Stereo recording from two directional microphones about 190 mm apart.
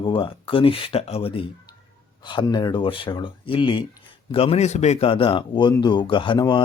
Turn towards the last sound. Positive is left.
turn(degrees=25)  # may be behind; listen again after turning